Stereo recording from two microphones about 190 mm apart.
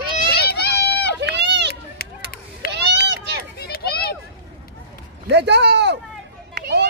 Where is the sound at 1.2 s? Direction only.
65° right (ahead or behind).